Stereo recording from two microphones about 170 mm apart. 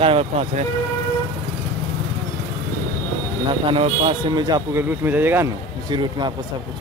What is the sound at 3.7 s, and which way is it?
Speech, 35° right (ahead or behind).